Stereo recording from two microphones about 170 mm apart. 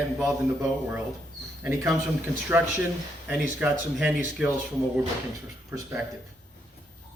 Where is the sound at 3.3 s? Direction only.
10° right (ahead or behind).